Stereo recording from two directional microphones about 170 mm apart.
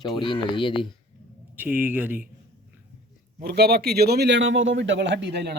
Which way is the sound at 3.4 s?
70° right (ahead or behind).